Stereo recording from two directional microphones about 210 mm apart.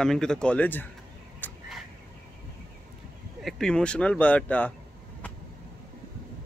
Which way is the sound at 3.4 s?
Centre (ahead or behind).